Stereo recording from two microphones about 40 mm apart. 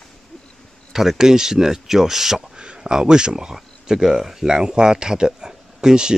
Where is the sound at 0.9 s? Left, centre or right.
Centre.